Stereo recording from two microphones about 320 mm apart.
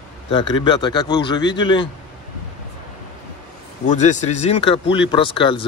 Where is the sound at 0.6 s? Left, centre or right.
Centre.